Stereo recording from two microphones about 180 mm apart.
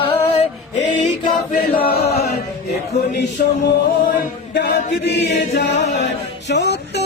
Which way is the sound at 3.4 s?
55° left (ahead or behind).